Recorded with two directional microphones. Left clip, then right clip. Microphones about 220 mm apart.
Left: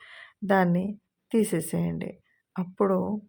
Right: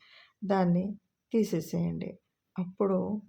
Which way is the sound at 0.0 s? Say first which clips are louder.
Left 5 dB; 20° left (ahead or behind).